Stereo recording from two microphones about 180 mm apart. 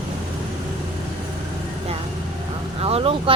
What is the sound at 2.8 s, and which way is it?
Speech, 35° right (ahead or behind).